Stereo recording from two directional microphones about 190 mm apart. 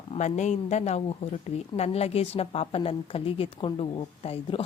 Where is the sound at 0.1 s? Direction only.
35° left (ahead or behind).